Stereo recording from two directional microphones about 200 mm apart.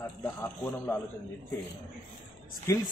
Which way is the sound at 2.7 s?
15° left (ahead or behind).